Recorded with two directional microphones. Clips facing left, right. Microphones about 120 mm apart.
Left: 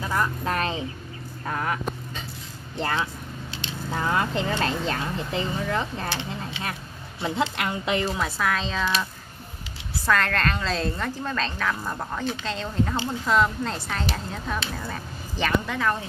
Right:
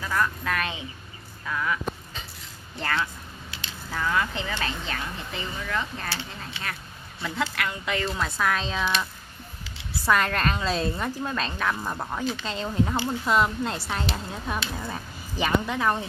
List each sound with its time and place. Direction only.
0.0 s speech: 25° left (ahead or behind)
1.4 s speech: 45° left (ahead or behind)
2.8 s a woman's voice: 20° left (ahead or behind)
3.9 s a woman's voice: 35° left (ahead or behind)
8.2 s a woman's voice: centre (ahead or behind)
10.0 s a woman's voice: 15° right (ahead or behind)